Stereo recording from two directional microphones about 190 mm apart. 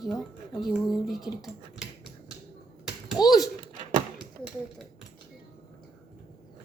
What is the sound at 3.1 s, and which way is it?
Speech, 20° left (ahead or behind).